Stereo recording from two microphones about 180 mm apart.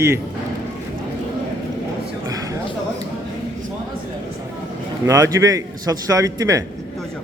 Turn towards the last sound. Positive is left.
turn(degrees=-20)  # may be behind; listen again after turning